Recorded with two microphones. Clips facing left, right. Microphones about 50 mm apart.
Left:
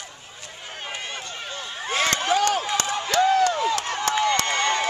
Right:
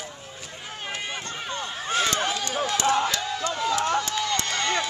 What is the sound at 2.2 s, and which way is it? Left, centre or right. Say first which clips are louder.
Run: left 7 dB; left.